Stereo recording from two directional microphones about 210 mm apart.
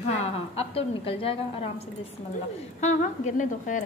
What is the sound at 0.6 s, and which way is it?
A woman's voice, 25° left (ahead or behind).